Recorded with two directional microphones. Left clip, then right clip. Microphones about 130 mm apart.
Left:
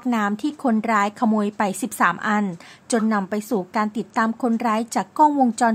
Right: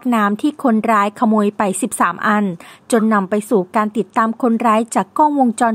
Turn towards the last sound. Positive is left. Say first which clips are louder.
# right 3 dB
turn(degrees=-35)  # may be behind; listen again after turning